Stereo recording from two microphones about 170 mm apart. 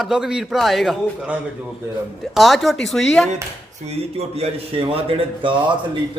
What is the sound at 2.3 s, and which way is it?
Speech, centre (ahead or behind).